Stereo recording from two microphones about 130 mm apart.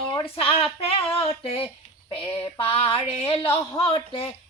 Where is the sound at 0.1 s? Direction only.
40° left (ahead or behind).